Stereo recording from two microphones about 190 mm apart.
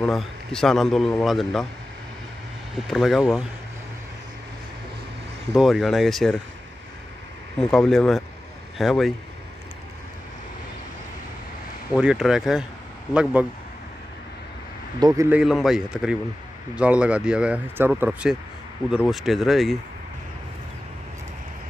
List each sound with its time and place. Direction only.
0.0 s a man's voice: centre (ahead or behind)
2.9 s a man's voice: centre (ahead or behind)
5.5 s a man's voice: centre (ahead or behind)
7.7 s a man's voice: centre (ahead or behind)
11.9 s a man's voice: 5° right (ahead or behind)
15.0 s a man's voice: 20° right (ahead or behind)
15.2 s a man's voice: 5° right (ahead or behind)